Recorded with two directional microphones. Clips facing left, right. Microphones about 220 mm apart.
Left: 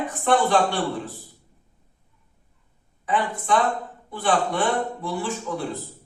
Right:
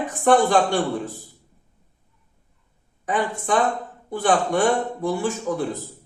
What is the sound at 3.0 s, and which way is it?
Speech, 45° right (ahead or behind).